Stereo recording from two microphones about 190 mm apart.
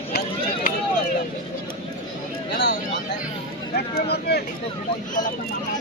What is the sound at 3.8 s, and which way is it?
Speech, 55° left (ahead or behind).